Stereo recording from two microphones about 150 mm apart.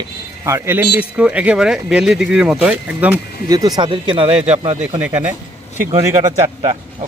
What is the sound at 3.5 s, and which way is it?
Speech, 25° right (ahead or behind).